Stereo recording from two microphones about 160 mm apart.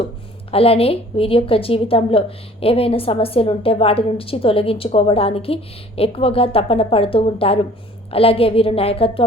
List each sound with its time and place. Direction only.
0.5 s a woman's voice: 35° left (ahead or behind)